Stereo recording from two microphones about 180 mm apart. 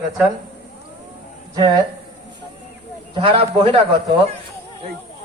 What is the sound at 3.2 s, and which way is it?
Speech, 35° right (ahead or behind).